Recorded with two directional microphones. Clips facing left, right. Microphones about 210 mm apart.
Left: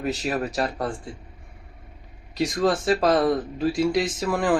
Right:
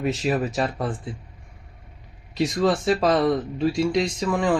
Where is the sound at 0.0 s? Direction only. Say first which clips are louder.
Right 3 dB; centre (ahead or behind).